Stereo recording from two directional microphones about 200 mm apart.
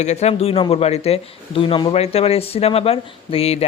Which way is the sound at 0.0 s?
35° left (ahead or behind).